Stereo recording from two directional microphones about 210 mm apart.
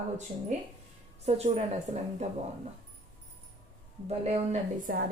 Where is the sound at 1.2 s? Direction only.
30° right (ahead or behind).